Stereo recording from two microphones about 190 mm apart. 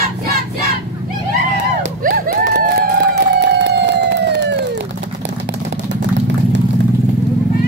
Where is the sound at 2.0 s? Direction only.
50° right (ahead or behind).